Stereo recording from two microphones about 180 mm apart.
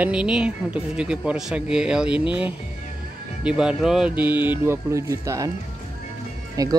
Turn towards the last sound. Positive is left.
turn(degrees=-20)  # may be behind; listen again after turning